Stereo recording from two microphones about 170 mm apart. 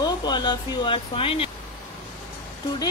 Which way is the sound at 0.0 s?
25° left (ahead or behind).